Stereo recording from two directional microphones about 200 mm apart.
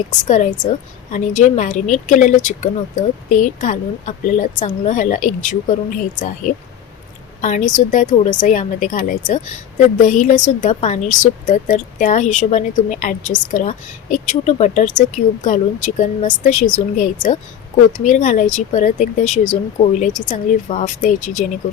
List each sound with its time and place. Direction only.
0.1 s a woman's voice: 40° left (ahead or behind)